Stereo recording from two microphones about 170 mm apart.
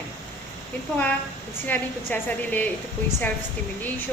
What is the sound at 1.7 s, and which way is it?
A woman's voice, 10° left (ahead or behind).